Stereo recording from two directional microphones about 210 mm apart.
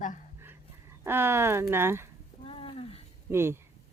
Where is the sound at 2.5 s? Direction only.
25° left (ahead or behind).